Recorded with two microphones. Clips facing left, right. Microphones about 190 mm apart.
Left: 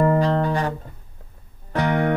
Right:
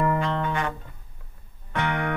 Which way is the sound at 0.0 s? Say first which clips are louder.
Left 6 dB; 35° left (ahead or behind).